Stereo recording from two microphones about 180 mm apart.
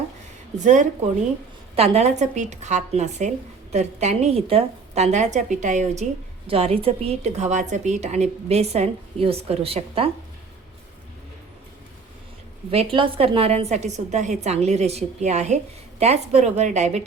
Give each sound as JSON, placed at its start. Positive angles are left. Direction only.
{"t": 0.6, "sound": "a woman's voice", "side_deg": -45}
{"t": 12.7, "sound": "a woman's voice", "side_deg": -30}